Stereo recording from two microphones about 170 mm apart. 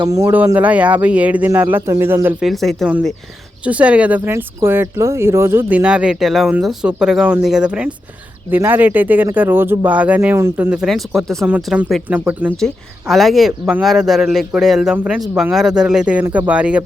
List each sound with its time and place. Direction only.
0.0 s speech: 20° right (ahead or behind)
2.4 s speech: centre (ahead or behind)
12.5 s speech: centre (ahead or behind)